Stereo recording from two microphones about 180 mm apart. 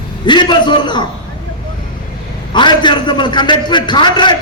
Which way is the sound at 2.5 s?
25° left (ahead or behind).